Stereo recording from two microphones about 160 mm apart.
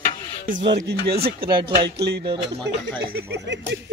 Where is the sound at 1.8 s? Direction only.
90° right.